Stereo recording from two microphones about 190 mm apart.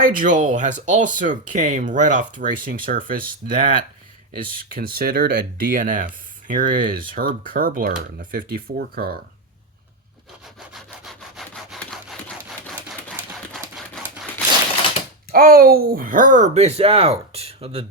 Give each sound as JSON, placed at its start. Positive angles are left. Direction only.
{"t": 0.0, "sound": "speech", "side_deg": -45}
{"t": 10.8, "sound": "sawing", "side_deg": 0}
{"t": 13.5, "sound": "a sound", "side_deg": 0}
{"t": 15.3, "sound": "speech", "side_deg": -50}